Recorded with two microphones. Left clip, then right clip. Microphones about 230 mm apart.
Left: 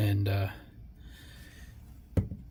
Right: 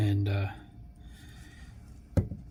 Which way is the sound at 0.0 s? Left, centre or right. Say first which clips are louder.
Even; left.